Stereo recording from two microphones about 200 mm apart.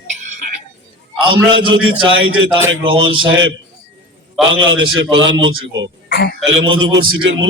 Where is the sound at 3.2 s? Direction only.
70° right (ahead or behind).